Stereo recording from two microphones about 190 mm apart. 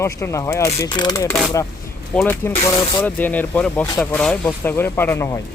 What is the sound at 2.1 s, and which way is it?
Speech, 10° left (ahead or behind).